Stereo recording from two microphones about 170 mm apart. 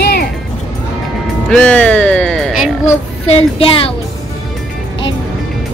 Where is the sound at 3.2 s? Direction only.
35° left (ahead or behind).